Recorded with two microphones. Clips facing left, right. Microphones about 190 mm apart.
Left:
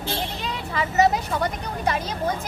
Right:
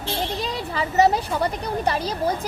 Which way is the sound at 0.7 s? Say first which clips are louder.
Right 1 dB; 35° right (ahead or behind).